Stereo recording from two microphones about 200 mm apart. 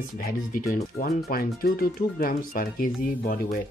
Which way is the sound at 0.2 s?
45° left (ahead or behind).